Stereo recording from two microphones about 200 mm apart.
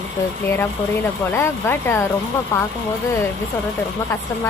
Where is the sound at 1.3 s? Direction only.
10° left (ahead or behind).